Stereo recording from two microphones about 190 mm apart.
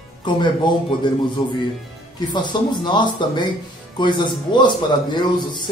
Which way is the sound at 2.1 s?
25° left (ahead or behind).